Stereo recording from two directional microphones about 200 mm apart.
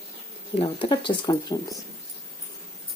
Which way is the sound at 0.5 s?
25° left (ahead or behind).